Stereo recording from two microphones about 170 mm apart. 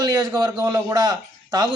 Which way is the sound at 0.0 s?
20° right (ahead or behind).